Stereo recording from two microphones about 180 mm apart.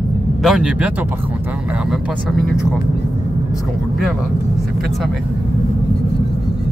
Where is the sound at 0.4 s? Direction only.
5° right (ahead or behind).